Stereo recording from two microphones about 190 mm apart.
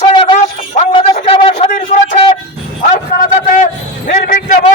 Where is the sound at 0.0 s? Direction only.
25° left (ahead or behind).